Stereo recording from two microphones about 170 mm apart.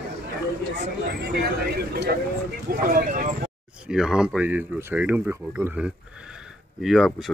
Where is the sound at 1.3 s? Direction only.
70° right (ahead or behind).